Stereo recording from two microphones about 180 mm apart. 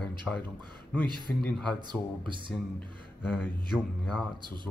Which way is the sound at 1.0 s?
25° right (ahead or behind).